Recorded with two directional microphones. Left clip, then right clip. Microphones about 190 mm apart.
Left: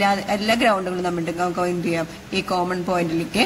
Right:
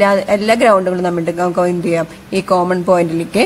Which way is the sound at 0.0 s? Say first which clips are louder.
Right 8 dB; 50° right (ahead or behind).